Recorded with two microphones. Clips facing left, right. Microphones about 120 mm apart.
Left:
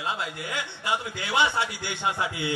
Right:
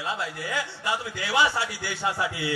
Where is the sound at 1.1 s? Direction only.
25° left (ahead or behind).